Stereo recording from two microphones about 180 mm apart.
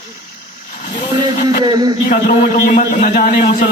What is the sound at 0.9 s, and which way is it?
Speech, 45° left (ahead or behind).